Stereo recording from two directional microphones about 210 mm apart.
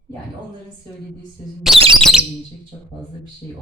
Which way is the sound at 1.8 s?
25° right (ahead or behind).